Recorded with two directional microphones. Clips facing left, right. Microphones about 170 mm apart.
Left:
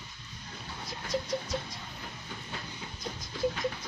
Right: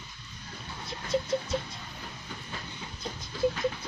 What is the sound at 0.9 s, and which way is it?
Goat, 25° right (ahead or behind).